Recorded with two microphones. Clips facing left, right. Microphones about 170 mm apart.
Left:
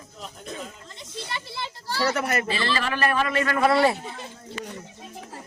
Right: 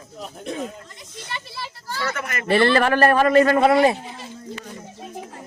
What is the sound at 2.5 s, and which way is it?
A man's voice, 60° right (ahead or behind).